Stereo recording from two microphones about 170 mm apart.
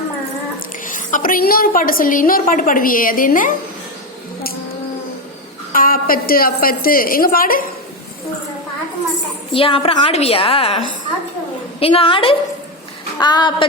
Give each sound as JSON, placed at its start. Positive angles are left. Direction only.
{"t": 0.9, "sound": "a woman's voice", "side_deg": 50}
{"t": 5.7, "sound": "a woman's voice", "side_deg": 55}
{"t": 9.5, "sound": "a woman's voice", "side_deg": 30}